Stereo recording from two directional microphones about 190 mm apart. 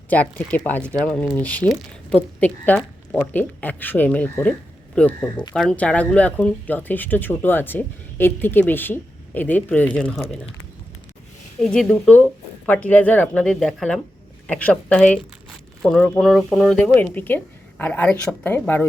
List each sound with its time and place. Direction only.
0.1 s speech: 10° left (ahead or behind)
11.6 s speech: 5° left (ahead or behind)